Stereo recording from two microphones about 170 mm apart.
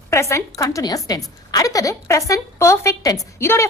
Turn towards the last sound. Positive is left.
turn(degrees=15)  # may be behind; listen again after turning